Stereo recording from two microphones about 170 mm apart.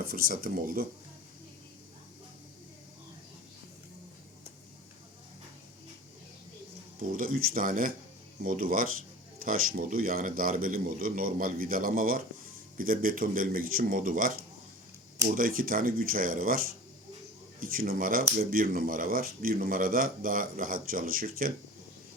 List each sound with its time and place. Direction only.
0.0 s speech: 60° right (ahead or behind)
7.2 s speech: 60° right (ahead or behind)